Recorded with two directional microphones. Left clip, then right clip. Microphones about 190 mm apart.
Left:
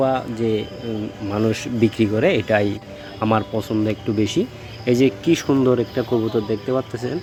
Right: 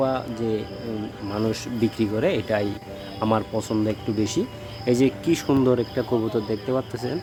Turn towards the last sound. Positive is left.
turn(degrees=10)  # may be behind; listen again after turning